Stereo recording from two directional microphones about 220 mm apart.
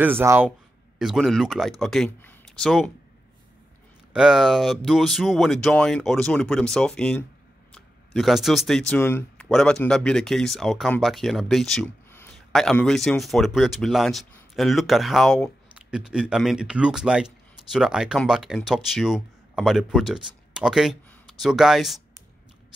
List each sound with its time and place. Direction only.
0.2 s a man's voice: 10° right (ahead or behind)
4.1 s speech: centre (ahead or behind)